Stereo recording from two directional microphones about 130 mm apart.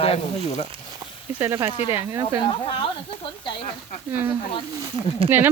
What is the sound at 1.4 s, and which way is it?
Speech, 20° right (ahead or behind).